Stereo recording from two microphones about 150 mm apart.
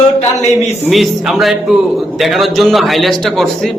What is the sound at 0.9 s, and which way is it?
A man's voice, centre (ahead or behind).